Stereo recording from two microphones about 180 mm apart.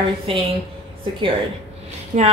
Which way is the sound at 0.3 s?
30° right (ahead or behind).